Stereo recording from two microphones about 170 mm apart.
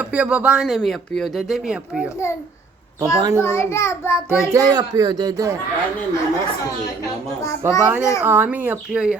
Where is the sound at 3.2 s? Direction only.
20° right (ahead or behind).